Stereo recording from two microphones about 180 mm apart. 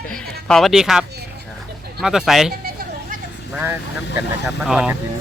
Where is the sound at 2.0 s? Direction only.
Centre (ahead or behind).